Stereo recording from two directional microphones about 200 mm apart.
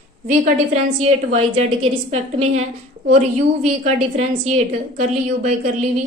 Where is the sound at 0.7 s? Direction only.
30° right (ahead or behind).